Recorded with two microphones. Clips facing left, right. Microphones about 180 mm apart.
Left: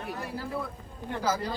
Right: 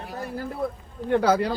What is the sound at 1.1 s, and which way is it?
Speech, 65° right (ahead or behind).